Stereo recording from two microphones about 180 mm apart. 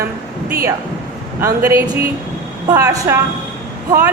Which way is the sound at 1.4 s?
15° right (ahead or behind).